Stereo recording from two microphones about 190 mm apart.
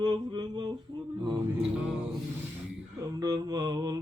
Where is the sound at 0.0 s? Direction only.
25° right (ahead or behind).